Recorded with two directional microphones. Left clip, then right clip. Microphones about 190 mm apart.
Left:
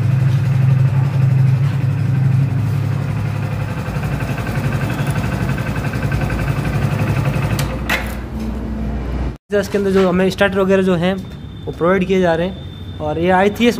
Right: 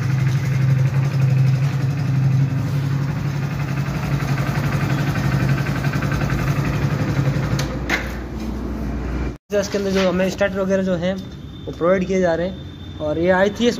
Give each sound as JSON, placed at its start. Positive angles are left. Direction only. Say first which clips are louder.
{"t": 9.5, "sound": "speech", "louder": "left 4 dB", "side_deg": 25}